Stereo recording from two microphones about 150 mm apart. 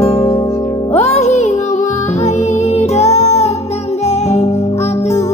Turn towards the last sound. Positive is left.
turn(degrees=45)  # may be behind; listen again after turning